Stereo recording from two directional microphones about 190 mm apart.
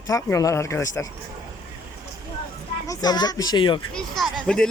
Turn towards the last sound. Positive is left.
turn(degrees=5)  # may be behind; listen again after turning